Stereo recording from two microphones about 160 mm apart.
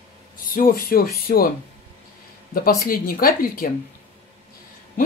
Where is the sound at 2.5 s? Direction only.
65° left (ahead or behind).